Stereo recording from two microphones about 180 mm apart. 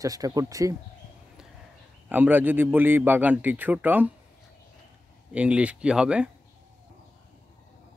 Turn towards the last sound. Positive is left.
turn(degrees=-5)  # may be behind; listen again after turning